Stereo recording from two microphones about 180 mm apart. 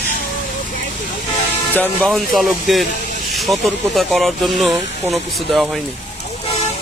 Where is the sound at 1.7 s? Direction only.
Centre (ahead or behind).